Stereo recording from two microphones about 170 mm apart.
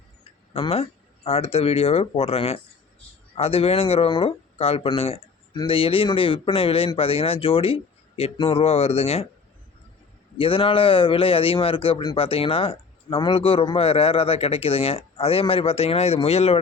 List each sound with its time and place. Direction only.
0.5 s a man's voice: 35° left (ahead or behind)
10.3 s a man's voice: 30° left (ahead or behind)